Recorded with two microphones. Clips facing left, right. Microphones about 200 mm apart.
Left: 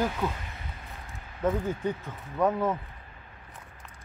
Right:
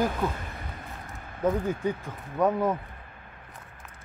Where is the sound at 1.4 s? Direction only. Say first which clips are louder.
Right 2 dB; 10° right (ahead or behind).